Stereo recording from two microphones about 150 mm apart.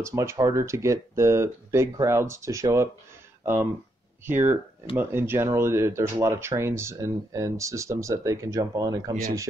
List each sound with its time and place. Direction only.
0.0 s speech: 20° right (ahead or behind)
4.3 s speech: 15° right (ahead or behind)